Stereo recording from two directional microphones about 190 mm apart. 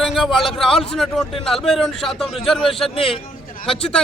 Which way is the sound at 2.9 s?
30° left (ahead or behind).